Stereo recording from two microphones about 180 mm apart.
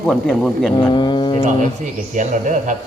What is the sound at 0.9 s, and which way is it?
Speech, 25° left (ahead or behind).